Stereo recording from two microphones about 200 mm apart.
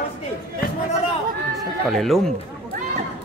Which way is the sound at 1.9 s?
Centre (ahead or behind).